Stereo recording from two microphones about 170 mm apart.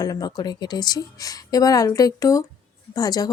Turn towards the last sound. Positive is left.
turn(degrees=25)  # may be behind; listen again after turning